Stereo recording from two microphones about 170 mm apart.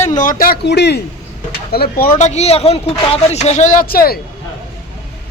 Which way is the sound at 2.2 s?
40° left (ahead or behind).